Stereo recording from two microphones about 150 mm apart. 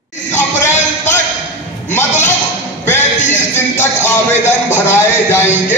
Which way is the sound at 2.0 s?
15° left (ahead or behind).